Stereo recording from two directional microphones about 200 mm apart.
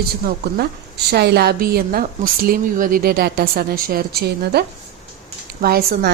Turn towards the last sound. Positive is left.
turn(degrees=-50)  # may be behind; listen again after turning